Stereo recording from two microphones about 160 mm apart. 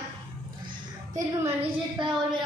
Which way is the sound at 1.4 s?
15° right (ahead or behind).